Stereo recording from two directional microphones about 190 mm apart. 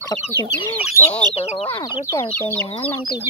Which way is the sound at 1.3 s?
35° left (ahead or behind).